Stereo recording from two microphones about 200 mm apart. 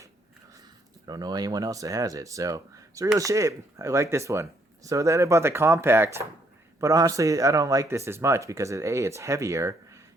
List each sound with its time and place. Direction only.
1.0 s speech: 20° right (ahead or behind)